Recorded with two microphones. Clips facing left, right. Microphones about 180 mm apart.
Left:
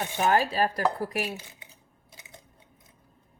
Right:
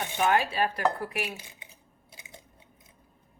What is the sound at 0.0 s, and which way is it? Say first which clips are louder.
Speech: left 1 dB; 40° left (ahead or behind).